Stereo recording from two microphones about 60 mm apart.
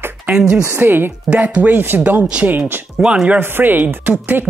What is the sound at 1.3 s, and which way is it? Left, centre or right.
Speech, right.